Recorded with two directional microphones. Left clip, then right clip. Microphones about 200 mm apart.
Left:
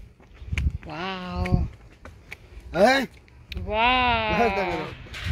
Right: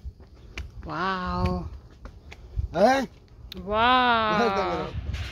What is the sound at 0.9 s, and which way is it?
Speech, 15° right (ahead or behind).